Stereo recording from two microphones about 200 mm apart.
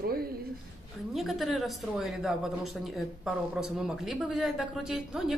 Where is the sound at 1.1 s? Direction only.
Centre (ahead or behind).